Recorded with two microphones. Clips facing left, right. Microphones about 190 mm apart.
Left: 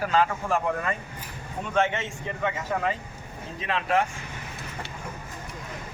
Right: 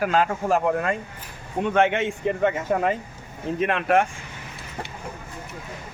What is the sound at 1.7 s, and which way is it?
Speech, 60° right (ahead or behind).